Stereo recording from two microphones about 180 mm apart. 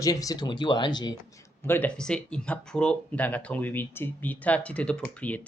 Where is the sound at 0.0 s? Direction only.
20° left (ahead or behind).